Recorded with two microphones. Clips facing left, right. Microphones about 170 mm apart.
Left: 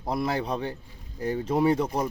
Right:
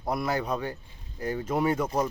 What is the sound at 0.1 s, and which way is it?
Speech, 30° left (ahead or behind).